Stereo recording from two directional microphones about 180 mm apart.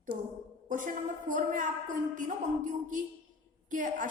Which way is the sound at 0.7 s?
45° right (ahead or behind).